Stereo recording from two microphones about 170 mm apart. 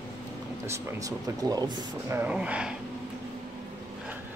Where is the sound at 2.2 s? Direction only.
5° right (ahead or behind).